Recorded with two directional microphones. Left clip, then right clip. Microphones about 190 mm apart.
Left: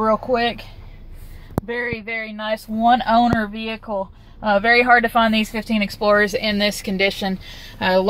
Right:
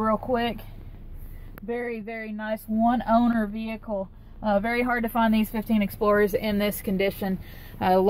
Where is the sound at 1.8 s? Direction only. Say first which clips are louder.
Left 7 dB; 5° left (ahead or behind).